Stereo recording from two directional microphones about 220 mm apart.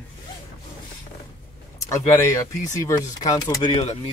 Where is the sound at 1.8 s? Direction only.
10° left (ahead or behind).